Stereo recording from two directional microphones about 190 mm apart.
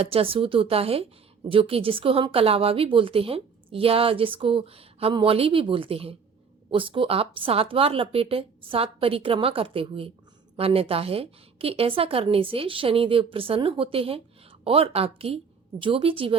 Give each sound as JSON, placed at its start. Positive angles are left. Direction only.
{"t": 0.0, "sound": "a woman's voice", "side_deg": -30}